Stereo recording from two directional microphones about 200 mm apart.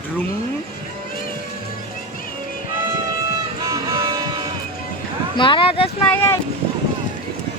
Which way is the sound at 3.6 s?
15° right (ahead or behind).